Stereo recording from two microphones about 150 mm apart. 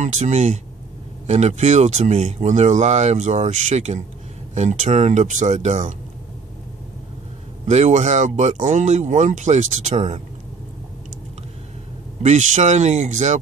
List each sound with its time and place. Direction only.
0.0 s speech: 50° right (ahead or behind)
7.6 s speech: 50° right (ahead or behind)
12.2 s speech: 50° right (ahead or behind)